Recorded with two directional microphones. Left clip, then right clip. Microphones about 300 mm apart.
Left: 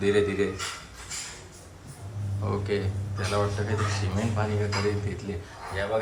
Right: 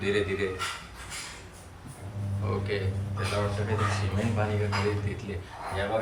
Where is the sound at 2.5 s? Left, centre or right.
Centre.